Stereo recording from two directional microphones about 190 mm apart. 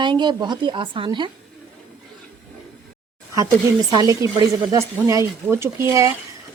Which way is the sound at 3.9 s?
20° right (ahead or behind).